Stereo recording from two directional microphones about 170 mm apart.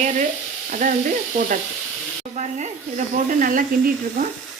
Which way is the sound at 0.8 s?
50° right (ahead or behind).